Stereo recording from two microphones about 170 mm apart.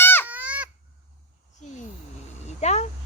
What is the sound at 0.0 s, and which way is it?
Goose, 10° left (ahead or behind).